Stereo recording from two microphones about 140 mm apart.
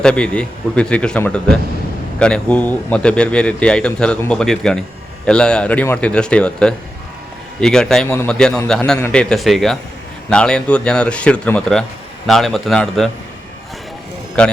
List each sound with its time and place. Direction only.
0.0 s speech: 5° left (ahead or behind)
14.4 s speech: 5° left (ahead or behind)